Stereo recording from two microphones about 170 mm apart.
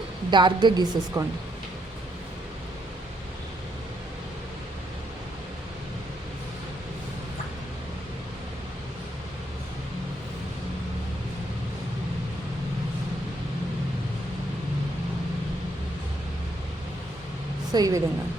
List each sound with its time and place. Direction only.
0.3 s a woman's voice: 25° right (ahead or behind)
17.7 s a woman's voice: 20° right (ahead or behind)